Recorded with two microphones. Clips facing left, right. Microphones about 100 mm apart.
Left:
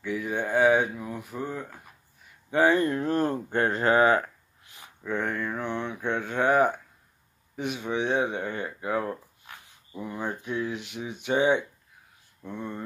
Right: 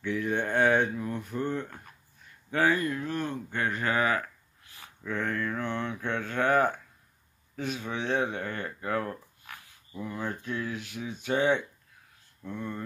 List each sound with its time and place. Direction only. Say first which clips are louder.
0.0 s speech: even; 5° left (ahead or behind)
2.5 s speech: left 4 dB; 20° left (ahead or behind)